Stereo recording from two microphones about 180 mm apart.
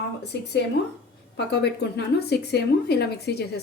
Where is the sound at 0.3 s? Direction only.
70° left (ahead or behind).